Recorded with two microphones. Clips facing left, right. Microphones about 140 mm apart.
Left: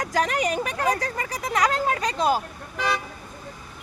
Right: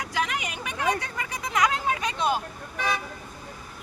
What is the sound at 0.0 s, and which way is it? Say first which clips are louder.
Speech: left 6 dB; 40° left (ahead or behind).